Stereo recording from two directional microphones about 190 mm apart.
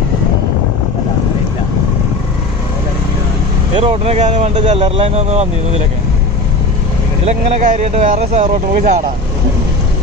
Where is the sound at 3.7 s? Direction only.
30° right (ahead or behind).